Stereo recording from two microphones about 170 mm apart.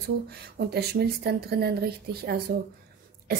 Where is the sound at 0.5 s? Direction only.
70° right (ahead or behind).